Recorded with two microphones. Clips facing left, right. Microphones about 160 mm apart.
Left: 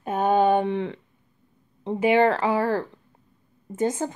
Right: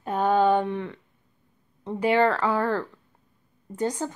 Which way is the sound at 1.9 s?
20° left (ahead or behind).